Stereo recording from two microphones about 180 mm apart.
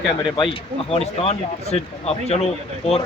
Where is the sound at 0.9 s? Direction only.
35° left (ahead or behind).